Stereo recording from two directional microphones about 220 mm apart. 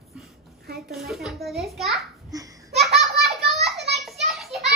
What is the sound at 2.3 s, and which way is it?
Laughter, 15° right (ahead or behind).